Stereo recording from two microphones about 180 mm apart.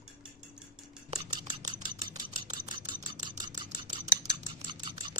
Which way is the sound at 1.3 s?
25° right (ahead or behind).